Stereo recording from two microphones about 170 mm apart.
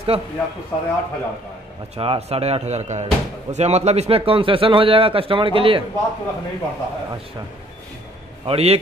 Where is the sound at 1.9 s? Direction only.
35° right (ahead or behind).